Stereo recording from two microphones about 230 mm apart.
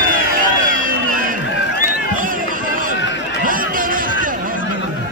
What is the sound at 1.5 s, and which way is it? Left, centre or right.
Run, left.